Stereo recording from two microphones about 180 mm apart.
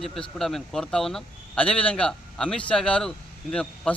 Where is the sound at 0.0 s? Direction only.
Centre (ahead or behind).